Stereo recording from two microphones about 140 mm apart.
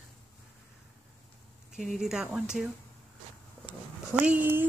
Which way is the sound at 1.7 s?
5° right (ahead or behind).